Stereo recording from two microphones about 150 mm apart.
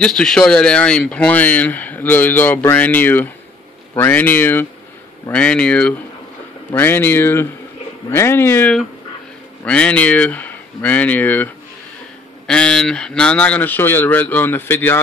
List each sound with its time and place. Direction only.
0.0 s speech: 5° left (ahead or behind)